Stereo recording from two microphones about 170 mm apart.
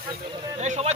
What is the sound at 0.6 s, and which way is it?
Speech, 45° right (ahead or behind).